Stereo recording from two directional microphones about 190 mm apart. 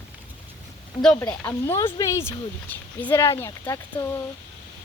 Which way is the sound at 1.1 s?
10° left (ahead or behind).